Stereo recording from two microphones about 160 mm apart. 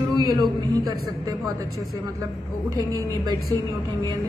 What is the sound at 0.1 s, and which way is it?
Speech, 25° right (ahead or behind).